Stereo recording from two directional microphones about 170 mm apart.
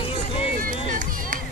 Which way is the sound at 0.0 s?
35° left (ahead or behind).